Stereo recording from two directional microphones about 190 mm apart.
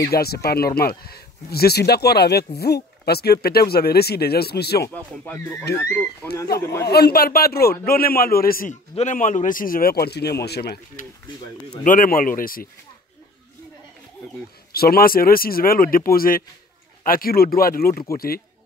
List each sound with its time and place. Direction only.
0.1 s speech: 55° left (ahead or behind)
4.8 s speech: 10° left (ahead or behind)
6.9 s a man's voice: 55° left (ahead or behind)
11.8 s a man's voice: 45° left (ahead or behind)
14.7 s a man's voice: 55° left (ahead or behind)